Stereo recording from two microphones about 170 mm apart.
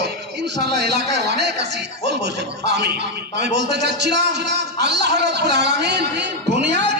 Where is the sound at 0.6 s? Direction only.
80° right.